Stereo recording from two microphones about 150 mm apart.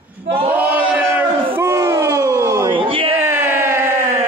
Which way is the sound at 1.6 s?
15° right (ahead or behind).